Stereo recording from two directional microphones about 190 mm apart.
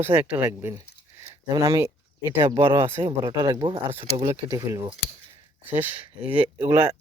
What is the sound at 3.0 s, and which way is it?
Speech, 25° right (ahead or behind).